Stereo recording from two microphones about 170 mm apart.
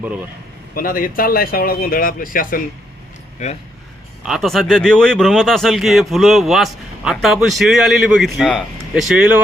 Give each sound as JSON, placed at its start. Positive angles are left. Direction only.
{"t": 0.7, "sound": "speech", "side_deg": 55}
{"t": 4.2, "sound": "speech", "side_deg": 0}